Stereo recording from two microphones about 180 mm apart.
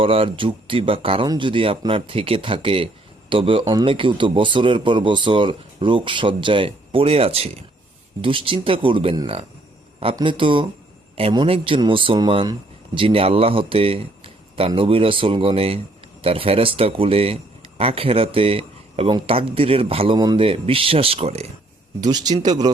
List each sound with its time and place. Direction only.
0.0 s speech: 30° right (ahead or behind)
22.0 s speech: 20° right (ahead or behind)